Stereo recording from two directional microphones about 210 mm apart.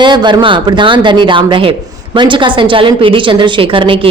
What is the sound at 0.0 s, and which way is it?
A woman's voice, 20° right (ahead or behind).